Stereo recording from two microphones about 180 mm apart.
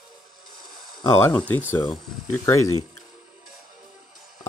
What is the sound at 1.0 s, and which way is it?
Speech, 15° left (ahead or behind).